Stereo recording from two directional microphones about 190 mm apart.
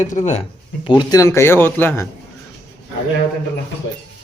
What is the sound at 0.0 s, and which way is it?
Speech, 40° left (ahead or behind).